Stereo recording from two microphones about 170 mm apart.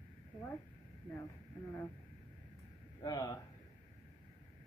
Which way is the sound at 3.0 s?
20° left (ahead or behind).